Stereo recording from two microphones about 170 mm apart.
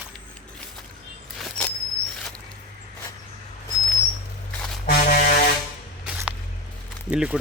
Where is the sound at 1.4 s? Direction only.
5° left (ahead or behind).